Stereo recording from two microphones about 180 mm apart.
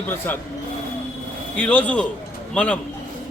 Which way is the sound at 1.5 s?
10° left (ahead or behind).